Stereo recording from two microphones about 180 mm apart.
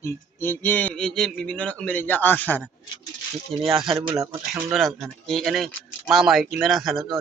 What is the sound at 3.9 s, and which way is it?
Speech, 30° right (ahead or behind).